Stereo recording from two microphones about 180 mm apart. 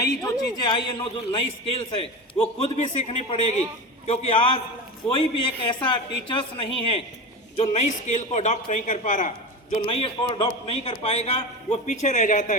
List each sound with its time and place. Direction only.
0.0 s a man's voice: 20° left (ahead or behind); by 9.8 s 45° left (ahead or behind)
9.8 s a man's voice: 30° left (ahead or behind)